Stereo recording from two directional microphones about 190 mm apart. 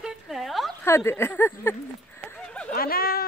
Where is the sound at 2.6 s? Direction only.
50° left (ahead or behind).